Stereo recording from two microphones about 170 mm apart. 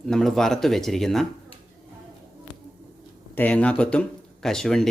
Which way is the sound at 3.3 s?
10° left (ahead or behind).